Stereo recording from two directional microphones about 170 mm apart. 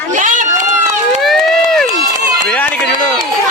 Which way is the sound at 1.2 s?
Centre (ahead or behind).